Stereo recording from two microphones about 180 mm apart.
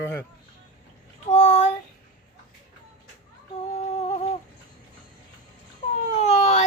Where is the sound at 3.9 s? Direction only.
40° left (ahead or behind).